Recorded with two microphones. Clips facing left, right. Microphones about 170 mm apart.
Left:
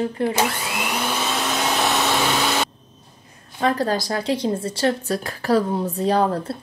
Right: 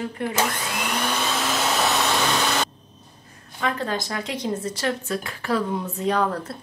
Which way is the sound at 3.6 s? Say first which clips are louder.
Left 5 dB; 35° left (ahead or behind).